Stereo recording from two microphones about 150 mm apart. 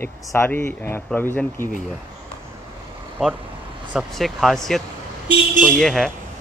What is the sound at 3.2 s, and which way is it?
Speech, centre (ahead or behind).